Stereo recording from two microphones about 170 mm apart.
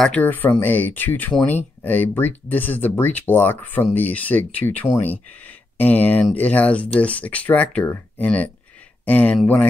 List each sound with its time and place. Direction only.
0.0 s speech: 10° left (ahead or behind)